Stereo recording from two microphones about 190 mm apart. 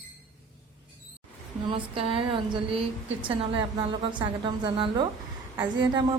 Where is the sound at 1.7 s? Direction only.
30° right (ahead or behind).